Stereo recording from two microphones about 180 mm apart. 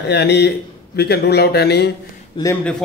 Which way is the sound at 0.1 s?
65° left (ahead or behind).